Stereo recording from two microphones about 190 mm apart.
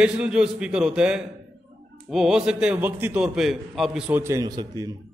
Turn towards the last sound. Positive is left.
turn(degrees=-20)  # may be behind; listen again after turning